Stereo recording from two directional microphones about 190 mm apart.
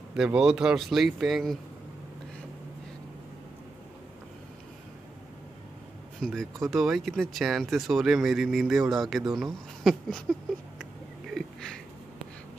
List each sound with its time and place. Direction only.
0.1 s speech: 5° right (ahead or behind)
6.2 s speech: centre (ahead or behind)
10.8 s a sound: centre (ahead or behind)